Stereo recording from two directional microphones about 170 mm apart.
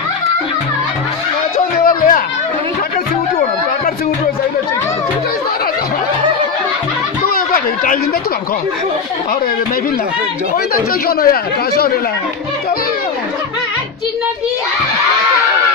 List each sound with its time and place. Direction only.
1.9 s a sound: 55° left (ahead or behind)
7.2 s chatter: 55° left (ahead or behind)
10.7 s speech: 60° left (ahead or behind)